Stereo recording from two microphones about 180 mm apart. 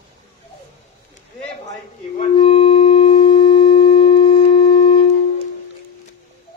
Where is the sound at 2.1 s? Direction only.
30° left (ahead or behind).